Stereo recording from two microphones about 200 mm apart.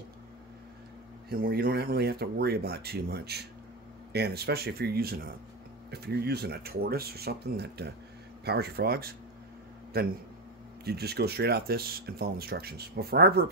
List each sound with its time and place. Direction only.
1.3 s speech: 50° right (ahead or behind)